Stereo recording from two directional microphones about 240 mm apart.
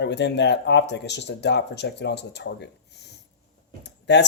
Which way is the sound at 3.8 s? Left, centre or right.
Left.